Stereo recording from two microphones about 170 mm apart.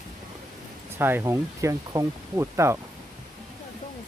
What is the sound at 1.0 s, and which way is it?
Speech, 15° right (ahead or behind).